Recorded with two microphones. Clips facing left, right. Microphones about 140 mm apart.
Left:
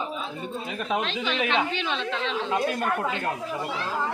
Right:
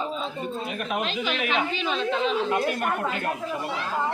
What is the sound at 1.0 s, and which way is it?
Speech, 5° right (ahead or behind).